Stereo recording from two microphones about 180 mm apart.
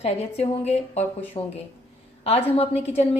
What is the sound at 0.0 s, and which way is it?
A woman's voice, 35° left (ahead or behind).